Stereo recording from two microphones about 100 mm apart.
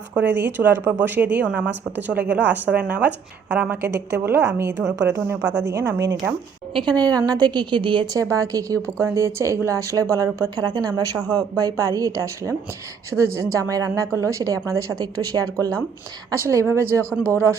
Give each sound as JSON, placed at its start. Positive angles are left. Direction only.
{"t": 0.1, "sound": "a woman's voice", "side_deg": -15}
{"t": 6.7, "sound": "a woman's voice", "side_deg": -45}
{"t": 8.1, "sound": "a woman's voice", "side_deg": -30}
{"t": 16.4, "sound": "speech", "side_deg": -25}
{"t": 17.0, "sound": "speech", "side_deg": 20}